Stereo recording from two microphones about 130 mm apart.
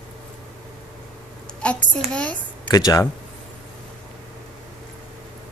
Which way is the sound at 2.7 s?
30° left (ahead or behind).